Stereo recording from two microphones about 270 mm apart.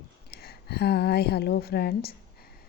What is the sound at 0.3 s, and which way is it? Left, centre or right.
A woman's voice, left.